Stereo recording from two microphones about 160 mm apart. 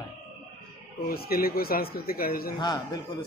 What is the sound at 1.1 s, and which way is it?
Speech, 70° left (ahead or behind).